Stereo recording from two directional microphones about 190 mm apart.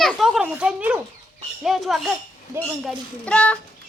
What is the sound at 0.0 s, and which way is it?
A child's voice, centre (ahead or behind).